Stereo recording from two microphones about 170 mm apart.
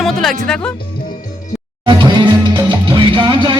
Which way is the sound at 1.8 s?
25° right (ahead or behind).